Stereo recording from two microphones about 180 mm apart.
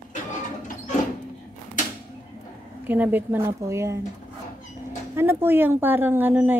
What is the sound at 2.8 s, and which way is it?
A woman's voice, 10° right (ahead or behind).